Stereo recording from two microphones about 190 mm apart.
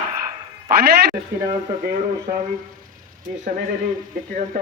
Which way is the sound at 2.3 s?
45° right (ahead or behind).